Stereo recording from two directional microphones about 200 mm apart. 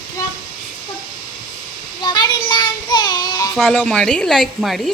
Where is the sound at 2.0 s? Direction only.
20° left (ahead or behind).